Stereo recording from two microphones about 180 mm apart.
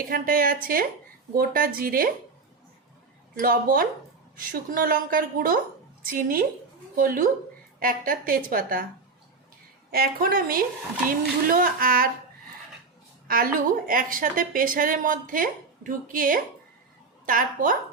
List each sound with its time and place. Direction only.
0.1 s a woman's voice: 50° right (ahead or behind)
3.3 s a woman's voice: 50° right (ahead or behind)
9.9 s a woman's voice: 55° right (ahead or behind)
13.2 s a woman's voice: 50° right (ahead or behind)